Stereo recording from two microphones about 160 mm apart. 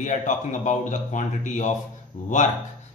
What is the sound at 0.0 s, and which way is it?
A man's voice, 50° left (ahead or behind).